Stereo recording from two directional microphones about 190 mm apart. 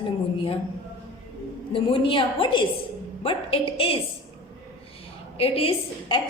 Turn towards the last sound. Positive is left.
turn(degrees=25)  # may be behind; listen again after turning